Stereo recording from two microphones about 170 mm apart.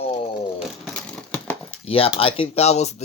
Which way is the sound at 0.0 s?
35° left (ahead or behind).